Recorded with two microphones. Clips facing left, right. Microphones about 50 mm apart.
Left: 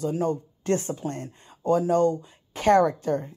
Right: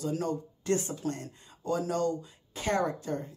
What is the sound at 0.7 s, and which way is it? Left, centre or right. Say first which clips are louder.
Speech: left 3 dB; left.